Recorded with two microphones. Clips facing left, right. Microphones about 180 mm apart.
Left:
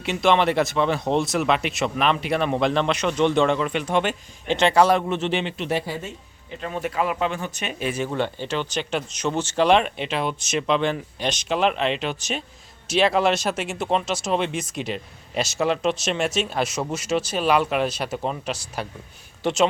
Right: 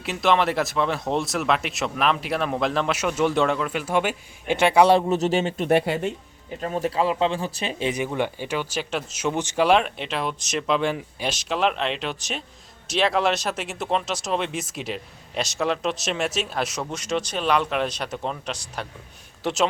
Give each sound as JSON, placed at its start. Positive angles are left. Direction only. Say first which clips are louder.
{"t": 0.0, "sound": "speech", "louder": "left 2 dB", "side_deg": 0}
{"t": 4.9, "sound": "speech", "louder": "right 3 dB", "side_deg": -35}
{"t": 6.6, "sound": "speech", "louder": "right 2 dB", "side_deg": -35}
{"t": 7.9, "sound": "speech", "louder": "even", "side_deg": -15}
{"t": 9.6, "sound": "speech", "louder": "left 1 dB", "side_deg": 0}